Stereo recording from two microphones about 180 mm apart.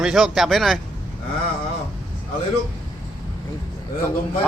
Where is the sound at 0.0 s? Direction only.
Centre (ahead or behind).